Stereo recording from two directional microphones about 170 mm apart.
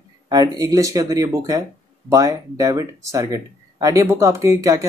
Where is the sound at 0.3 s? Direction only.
20° right (ahead or behind).